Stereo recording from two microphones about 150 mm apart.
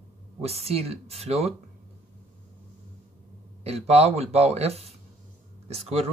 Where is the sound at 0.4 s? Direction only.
45° right (ahead or behind).